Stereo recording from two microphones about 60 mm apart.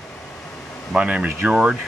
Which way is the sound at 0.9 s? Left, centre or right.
Centre.